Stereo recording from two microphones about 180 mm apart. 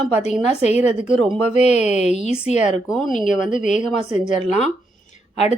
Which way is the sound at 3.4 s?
45° left (ahead or behind).